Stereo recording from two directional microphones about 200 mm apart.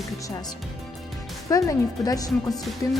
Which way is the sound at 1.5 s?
20° left (ahead or behind).